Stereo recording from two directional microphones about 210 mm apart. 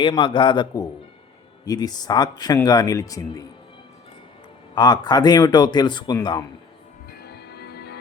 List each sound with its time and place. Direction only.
0.0 s speech: 25° left (ahead or behind)
4.7 s speech: 20° left (ahead or behind)
7.1 s music: 50° left (ahead or behind)